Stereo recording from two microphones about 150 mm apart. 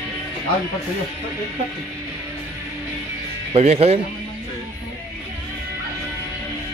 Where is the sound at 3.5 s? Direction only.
45° right (ahead or behind).